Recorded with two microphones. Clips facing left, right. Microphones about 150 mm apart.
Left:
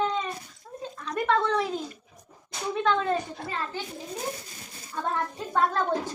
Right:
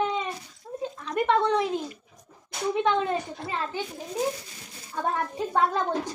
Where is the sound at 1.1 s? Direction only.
20° right (ahead or behind).